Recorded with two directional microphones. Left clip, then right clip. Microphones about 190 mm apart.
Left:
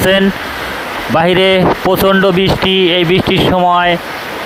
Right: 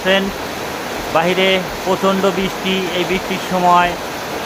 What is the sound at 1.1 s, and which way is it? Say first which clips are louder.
Speech: left 5 dB; 55° left (ahead or behind).